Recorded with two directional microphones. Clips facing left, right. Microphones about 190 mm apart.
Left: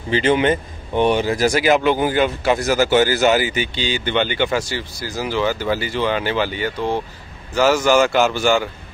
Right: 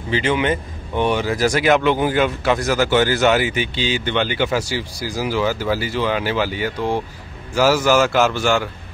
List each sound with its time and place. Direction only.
0.1 s speech: 35° left (ahead or behind)
0.9 s speech: 20° left (ahead or behind)
1.5 s speech: 5° left (ahead or behind)